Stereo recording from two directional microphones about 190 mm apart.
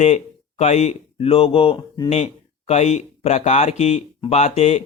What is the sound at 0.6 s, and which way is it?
Speech, 35° left (ahead or behind).